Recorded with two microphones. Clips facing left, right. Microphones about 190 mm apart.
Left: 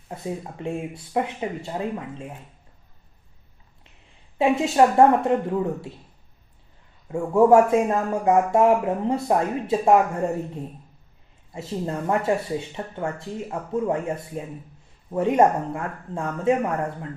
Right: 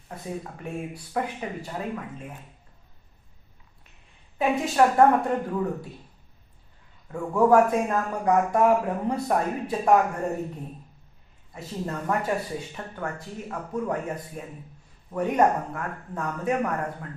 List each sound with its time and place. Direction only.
0.6 s speech: 25° left (ahead or behind)
4.4 s speech: 25° left (ahead or behind)
7.1 s speech: 25° left (ahead or behind)
11.5 s speech: 25° left (ahead or behind)